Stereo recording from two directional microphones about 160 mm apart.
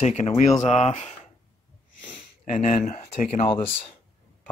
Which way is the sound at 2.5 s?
50° left (ahead or behind).